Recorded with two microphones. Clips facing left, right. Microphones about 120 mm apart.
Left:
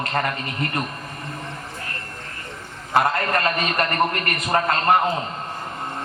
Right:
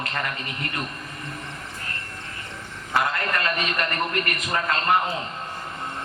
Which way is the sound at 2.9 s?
40° left (ahead or behind).